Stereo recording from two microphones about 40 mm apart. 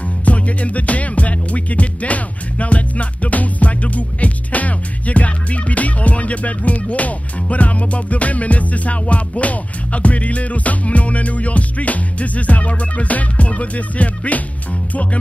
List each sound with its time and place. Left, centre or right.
0.2 s music: left